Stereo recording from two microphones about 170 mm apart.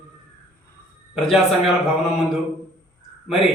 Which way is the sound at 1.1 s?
Centre (ahead or behind).